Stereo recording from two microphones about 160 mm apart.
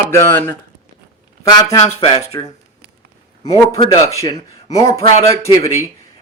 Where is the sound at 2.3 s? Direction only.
30° left (ahead or behind).